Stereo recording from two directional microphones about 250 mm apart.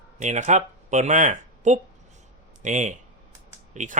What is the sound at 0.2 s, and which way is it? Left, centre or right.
Speech, right.